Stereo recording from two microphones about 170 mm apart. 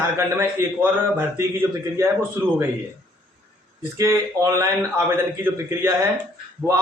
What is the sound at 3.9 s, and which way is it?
A man's voice, 20° right (ahead or behind).